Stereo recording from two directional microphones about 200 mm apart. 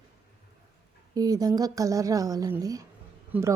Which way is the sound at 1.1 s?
20° right (ahead or behind).